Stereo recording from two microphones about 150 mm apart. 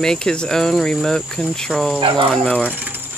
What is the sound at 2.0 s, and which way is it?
Speech, 35° right (ahead or behind).